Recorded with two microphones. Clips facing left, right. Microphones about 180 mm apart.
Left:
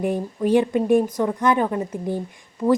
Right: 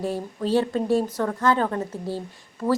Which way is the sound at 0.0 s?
15° left (ahead or behind).